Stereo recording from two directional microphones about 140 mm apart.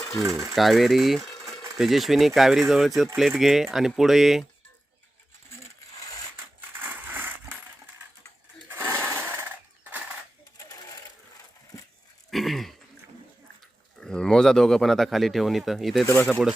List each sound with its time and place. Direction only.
0.2 s speech: 25° right (ahead or behind)
0.5 s speech: centre (ahead or behind)
6.3 s coin: 15° right (ahead or behind)
8.7 s sewing machine: 15° right (ahead or behind)
12.3 s throat clearing: centre (ahead or behind)
14.0 s speech: 5° left (ahead or behind)
16.0 s speech: 15° left (ahead or behind)